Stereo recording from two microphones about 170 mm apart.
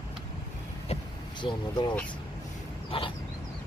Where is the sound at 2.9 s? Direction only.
30° left (ahead or behind).